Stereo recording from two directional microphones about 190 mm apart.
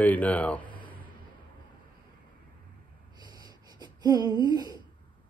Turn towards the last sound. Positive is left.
turn(degrees=-20)  # may be behind; listen again after turning